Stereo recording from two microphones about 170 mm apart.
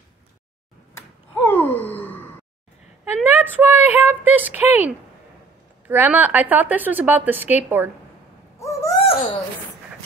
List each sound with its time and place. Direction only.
1.3 s sigh: 10° left (ahead or behind)
3.3 s a woman's voice: 10° right (ahead or behind)
5.9 s a woman's voice: 10° right (ahead or behind)
8.5 s bird: 15° left (ahead or behind)
9.0 s a sound: 35° left (ahead or behind)